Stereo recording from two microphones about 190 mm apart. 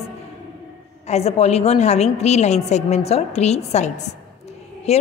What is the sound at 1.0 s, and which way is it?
A woman's voice, 35° left (ahead or behind).